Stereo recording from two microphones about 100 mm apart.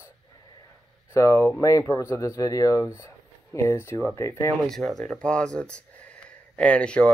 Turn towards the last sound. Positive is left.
turn(degrees=10)  # may be behind; listen again after turning